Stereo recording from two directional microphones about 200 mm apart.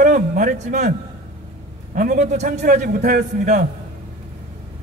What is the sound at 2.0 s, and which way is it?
A man's voice, 35° right (ahead or behind).